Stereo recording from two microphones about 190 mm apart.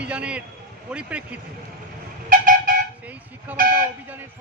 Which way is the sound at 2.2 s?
45° right (ahead or behind).